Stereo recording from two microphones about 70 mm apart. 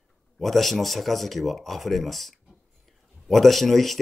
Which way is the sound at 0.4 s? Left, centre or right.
Centre.